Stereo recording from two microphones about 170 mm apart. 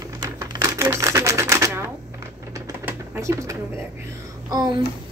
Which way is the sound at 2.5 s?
15° right (ahead or behind).